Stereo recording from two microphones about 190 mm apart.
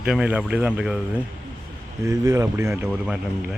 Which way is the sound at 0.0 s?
5° right (ahead or behind).